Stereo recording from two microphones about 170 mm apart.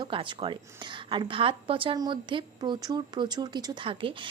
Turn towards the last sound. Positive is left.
turn(degrees=-30)  # may be behind; listen again after turning